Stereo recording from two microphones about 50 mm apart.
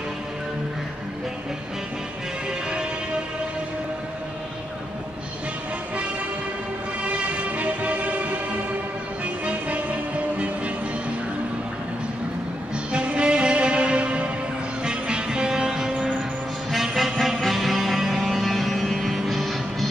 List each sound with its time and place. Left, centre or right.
7.1 s music: right
12.9 s music: right; by 19.9 s centre